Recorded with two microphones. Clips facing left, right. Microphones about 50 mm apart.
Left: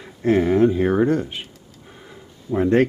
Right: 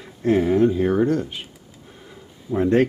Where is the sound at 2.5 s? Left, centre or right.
Centre.